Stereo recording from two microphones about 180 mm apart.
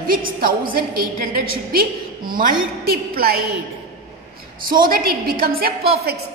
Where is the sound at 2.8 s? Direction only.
55° right (ahead or behind).